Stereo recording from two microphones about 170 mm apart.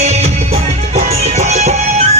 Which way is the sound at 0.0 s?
40° right (ahead or behind).